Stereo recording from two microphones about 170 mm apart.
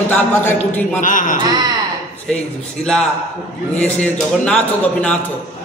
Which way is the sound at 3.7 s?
10° left (ahead or behind).